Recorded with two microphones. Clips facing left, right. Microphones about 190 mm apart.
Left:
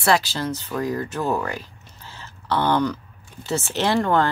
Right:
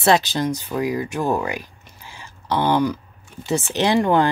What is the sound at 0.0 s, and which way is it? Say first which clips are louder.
Speech: right 3 dB; 20° right (ahead or behind).